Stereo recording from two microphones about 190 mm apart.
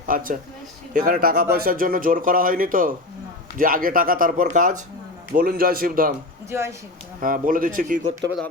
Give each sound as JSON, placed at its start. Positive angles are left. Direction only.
{"t": 0.1, "sound": "speech", "side_deg": -45}
{"t": 6.5, "sound": "speech", "side_deg": -15}
{"t": 7.2, "sound": "speech", "side_deg": -45}